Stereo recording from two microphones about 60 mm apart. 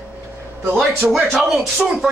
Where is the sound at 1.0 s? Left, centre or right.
Centre.